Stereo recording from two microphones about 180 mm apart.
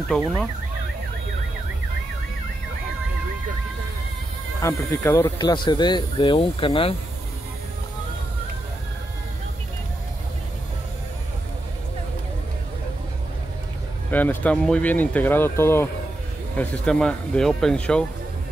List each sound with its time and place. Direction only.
0.1 s speech: centre (ahead or behind)
4.6 s speech: 15° left (ahead or behind)
14.1 s speech: 10° left (ahead or behind)